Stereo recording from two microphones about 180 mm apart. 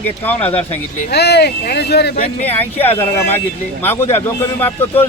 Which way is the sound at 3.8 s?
15° left (ahead or behind).